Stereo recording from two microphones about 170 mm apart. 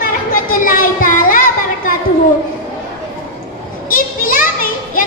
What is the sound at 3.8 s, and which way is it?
Children playing, 55° left (ahead or behind).